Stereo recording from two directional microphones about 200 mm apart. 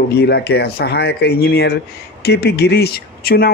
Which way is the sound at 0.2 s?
55° left (ahead or behind).